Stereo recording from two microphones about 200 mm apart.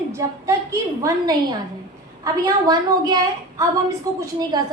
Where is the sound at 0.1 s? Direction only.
15° right (ahead or behind).